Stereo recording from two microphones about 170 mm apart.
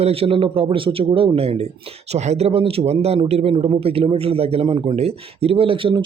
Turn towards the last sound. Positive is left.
turn(degrees=-30)  # may be behind; listen again after turning